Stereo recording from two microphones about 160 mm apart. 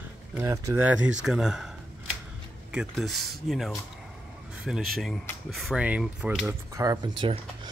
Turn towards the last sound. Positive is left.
turn(degrees=-30)  # may be behind; listen again after turning